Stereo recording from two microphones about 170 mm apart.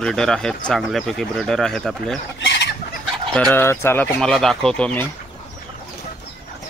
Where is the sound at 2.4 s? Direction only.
90° left.